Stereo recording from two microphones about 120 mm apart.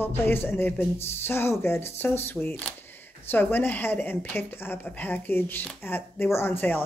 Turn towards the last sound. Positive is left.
turn(degrees=15)  # may be behind; listen again after turning